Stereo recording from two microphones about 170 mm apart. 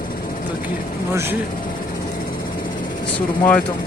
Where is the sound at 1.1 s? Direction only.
15° right (ahead or behind).